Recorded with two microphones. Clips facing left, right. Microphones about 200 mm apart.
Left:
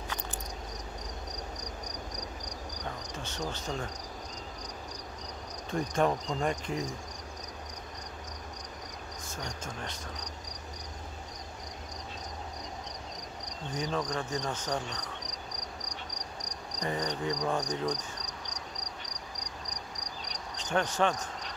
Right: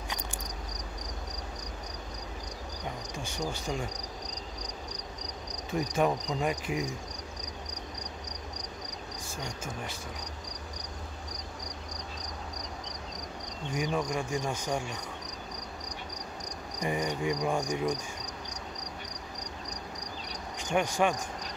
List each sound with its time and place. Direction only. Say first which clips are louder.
3.2 s cricket: right 3 dB; 10° right (ahead or behind)
5.7 s cricket: right 1 dB; 5° right (ahead or behind)
13.7 s cricket: right 2 dB; 20° right (ahead or behind)
16.8 s cricket: right 2 dB; 10° right (ahead or behind)
20.5 s speech: right 1 dB; 10° right (ahead or behind)